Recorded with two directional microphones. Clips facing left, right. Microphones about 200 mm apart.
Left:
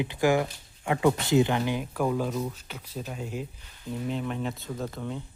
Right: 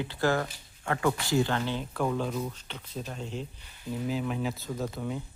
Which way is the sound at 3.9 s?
Centre (ahead or behind).